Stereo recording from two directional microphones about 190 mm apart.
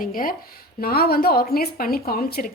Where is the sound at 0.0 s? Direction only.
45° left (ahead or behind).